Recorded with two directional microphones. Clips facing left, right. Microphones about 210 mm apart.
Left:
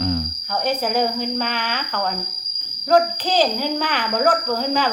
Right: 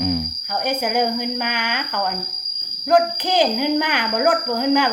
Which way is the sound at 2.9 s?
15° right (ahead or behind).